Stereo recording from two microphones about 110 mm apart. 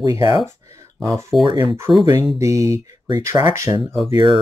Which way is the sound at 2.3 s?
30° right (ahead or behind).